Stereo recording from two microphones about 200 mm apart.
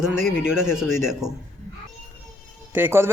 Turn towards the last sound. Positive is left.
turn(degrees=-10)  # may be behind; listen again after turning